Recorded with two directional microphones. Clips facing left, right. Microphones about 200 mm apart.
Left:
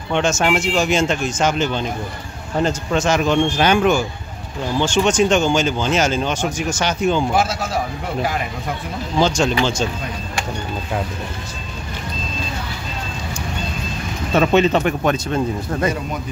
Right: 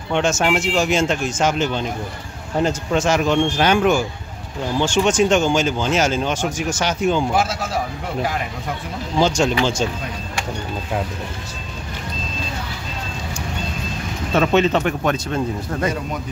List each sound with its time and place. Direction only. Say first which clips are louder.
0.1 s speech: left 1 dB; 5° right (ahead or behind)
9.2 s speech: even; 10° right (ahead or behind)
14.3 s speech: left 2 dB; 10° left (ahead or behind)